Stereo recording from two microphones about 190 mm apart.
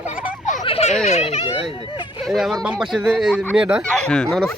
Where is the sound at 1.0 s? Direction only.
35° left (ahead or behind).